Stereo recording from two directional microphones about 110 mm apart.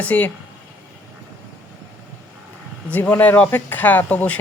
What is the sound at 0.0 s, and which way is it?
Speech, 15° left (ahead or behind).